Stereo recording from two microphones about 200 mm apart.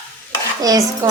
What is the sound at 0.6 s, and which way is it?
Speech, 20° right (ahead or behind).